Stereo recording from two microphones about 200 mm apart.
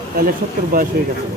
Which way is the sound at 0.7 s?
45° right (ahead or behind).